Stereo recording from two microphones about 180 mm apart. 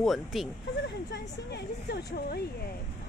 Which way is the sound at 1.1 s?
65° left (ahead or behind).